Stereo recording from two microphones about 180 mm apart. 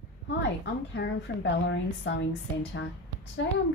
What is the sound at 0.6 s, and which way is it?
Speech, 75° left (ahead or behind).